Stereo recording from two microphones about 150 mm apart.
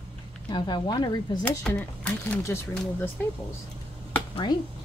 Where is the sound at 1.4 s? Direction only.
10° left (ahead or behind).